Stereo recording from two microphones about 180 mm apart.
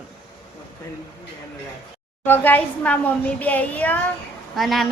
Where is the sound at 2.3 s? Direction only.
10° left (ahead or behind).